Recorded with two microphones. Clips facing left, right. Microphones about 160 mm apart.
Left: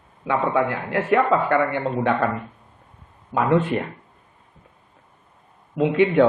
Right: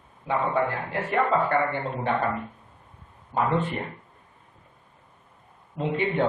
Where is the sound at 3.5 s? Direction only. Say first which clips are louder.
Left 7 dB; 75° left (ahead or behind).